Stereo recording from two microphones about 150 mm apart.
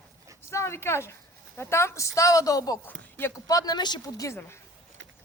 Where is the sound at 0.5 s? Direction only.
20° left (ahead or behind).